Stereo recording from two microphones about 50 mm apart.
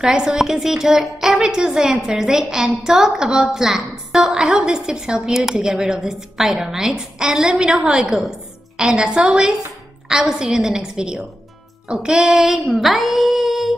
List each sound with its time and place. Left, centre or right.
0.0 s a woman's voice: centre
7.8 s a woman's voice: centre
8.9 s a woman's voice: right
11.9 s female singing: centre